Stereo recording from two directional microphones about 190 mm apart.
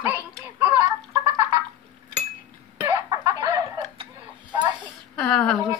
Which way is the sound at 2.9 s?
20° right (ahead or behind).